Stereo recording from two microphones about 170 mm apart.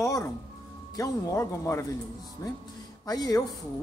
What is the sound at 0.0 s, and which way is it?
Music, 20° left (ahead or behind).